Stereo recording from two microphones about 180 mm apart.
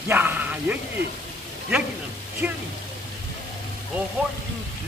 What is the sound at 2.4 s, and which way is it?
Speech, 5° right (ahead or behind).